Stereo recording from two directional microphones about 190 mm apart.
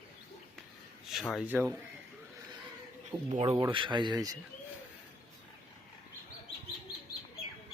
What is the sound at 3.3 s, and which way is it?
Speech, 35° right (ahead or behind).